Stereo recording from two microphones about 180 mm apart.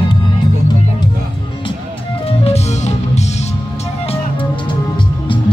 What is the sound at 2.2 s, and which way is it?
Music, 35° left (ahead or behind).